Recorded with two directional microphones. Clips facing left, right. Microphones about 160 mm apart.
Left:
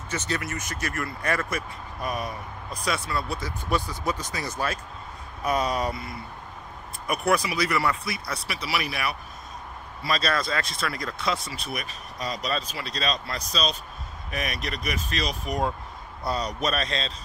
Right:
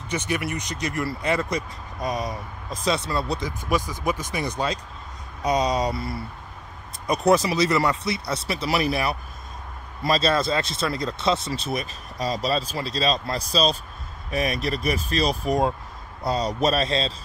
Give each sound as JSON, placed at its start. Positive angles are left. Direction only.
{"t": 0.1, "sound": "speech", "side_deg": -15}
{"t": 7.1, "sound": "speech", "side_deg": -20}
{"t": 8.6, "sound": "speech", "side_deg": -40}
{"t": 10.1, "sound": "speech", "side_deg": -25}